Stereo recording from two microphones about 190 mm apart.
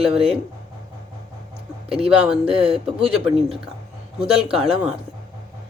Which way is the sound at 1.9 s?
30° right (ahead or behind).